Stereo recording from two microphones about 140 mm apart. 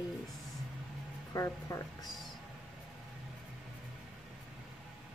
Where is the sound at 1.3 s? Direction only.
25° left (ahead or behind).